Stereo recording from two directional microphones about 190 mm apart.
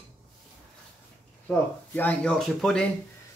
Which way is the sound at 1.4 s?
10° left (ahead or behind).